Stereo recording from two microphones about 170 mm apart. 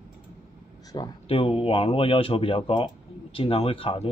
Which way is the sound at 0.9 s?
25° left (ahead or behind).